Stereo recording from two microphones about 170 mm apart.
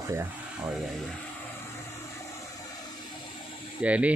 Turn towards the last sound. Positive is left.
turn(degrees=-10)  # may be behind; listen again after turning